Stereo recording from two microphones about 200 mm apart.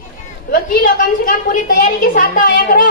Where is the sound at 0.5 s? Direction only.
45° left (ahead or behind).